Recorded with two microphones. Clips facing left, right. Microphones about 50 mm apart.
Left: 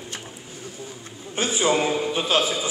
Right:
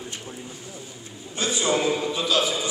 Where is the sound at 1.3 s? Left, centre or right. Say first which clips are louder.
Left 2 dB; left.